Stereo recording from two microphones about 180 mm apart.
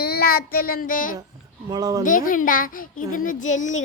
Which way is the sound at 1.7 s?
20° right (ahead or behind).